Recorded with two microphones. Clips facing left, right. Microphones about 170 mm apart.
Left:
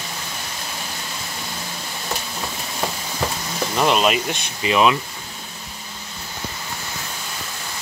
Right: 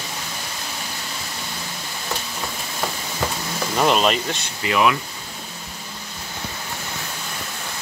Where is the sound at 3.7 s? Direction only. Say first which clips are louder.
Even; centre (ahead or behind).